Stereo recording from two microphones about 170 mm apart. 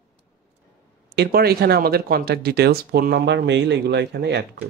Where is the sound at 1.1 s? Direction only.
70° right (ahead or behind).